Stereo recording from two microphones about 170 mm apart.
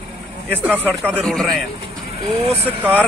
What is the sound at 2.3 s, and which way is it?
Speech, 35° right (ahead or behind).